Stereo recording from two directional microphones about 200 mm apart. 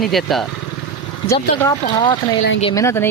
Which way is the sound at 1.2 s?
15° left (ahead or behind).